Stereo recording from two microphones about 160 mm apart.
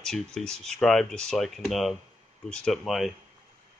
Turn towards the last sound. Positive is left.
turn(degrees=0)  # may be behind; listen again after turning